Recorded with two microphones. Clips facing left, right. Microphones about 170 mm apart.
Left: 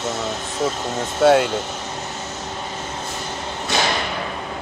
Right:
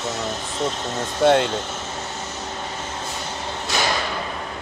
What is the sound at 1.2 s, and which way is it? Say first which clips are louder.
Speech: left 2 dB; 5° left (ahead or behind).